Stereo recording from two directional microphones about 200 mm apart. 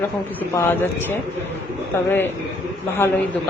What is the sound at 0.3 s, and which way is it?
A woman's voice, 10° left (ahead or behind).